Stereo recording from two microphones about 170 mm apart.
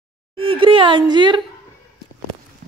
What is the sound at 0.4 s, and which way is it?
Speech, 30° right (ahead or behind).